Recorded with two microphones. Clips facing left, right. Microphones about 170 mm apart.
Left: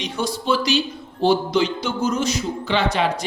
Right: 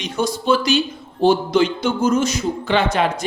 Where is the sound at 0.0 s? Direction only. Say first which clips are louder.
Right 3 dB; 45° right (ahead or behind).